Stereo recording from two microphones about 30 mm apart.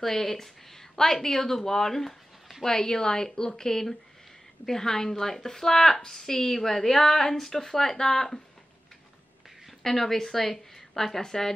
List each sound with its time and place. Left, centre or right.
0.0 s a woman's voice: centre
9.8 s a woman's voice: centre